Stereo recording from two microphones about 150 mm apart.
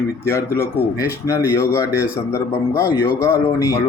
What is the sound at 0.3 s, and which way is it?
Speech, 20° left (ahead or behind).